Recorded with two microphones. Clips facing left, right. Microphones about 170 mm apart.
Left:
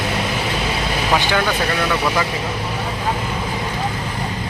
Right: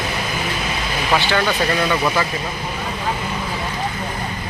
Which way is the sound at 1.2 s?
15° left (ahead or behind).